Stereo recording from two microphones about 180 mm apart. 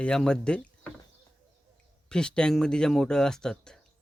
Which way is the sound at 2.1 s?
5° left (ahead or behind).